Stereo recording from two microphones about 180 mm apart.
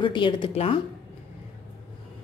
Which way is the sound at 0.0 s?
30° left (ahead or behind).